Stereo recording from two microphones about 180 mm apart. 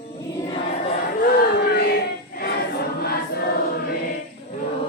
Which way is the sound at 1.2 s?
60° left (ahead or behind).